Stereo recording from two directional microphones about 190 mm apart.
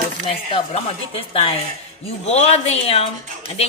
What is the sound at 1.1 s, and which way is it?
A woman's voice, 30° left (ahead or behind).